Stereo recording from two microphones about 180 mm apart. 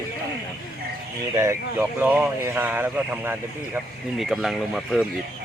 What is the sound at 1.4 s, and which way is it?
Speech, 15° right (ahead or behind).